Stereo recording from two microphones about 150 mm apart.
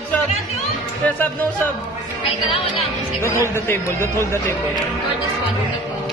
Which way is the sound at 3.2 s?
20° left (ahead or behind).